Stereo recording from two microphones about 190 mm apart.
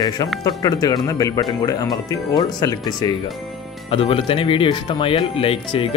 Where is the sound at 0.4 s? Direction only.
20° left (ahead or behind).